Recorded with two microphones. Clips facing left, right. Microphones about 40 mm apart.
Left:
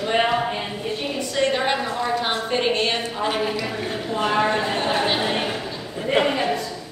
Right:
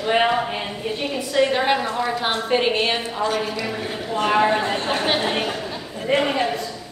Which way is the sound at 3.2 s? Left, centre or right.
Left.